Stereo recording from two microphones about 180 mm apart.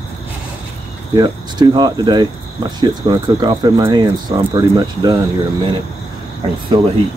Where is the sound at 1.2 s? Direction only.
20° right (ahead or behind).